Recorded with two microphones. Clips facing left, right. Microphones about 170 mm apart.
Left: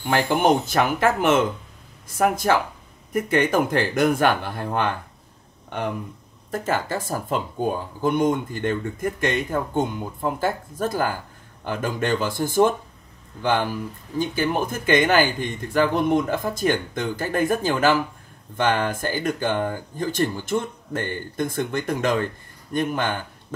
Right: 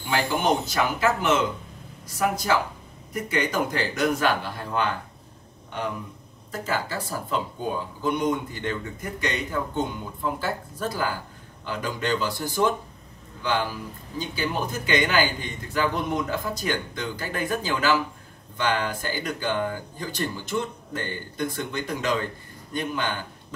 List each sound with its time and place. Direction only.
0.0 s a man's voice: 50° left (ahead or behind)
6.5 s a man's voice: 50° left (ahead or behind)